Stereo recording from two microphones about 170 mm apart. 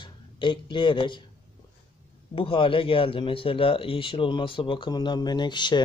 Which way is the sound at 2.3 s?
30° left (ahead or behind).